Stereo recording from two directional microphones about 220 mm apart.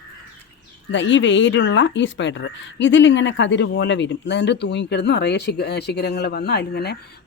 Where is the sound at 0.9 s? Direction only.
55° left (ahead or behind).